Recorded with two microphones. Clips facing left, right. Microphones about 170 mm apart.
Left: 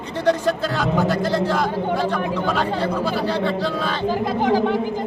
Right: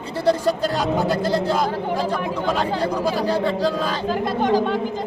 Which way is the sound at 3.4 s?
40° right (ahead or behind).